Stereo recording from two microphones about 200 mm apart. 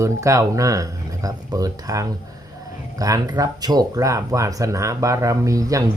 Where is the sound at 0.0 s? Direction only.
15° right (ahead or behind).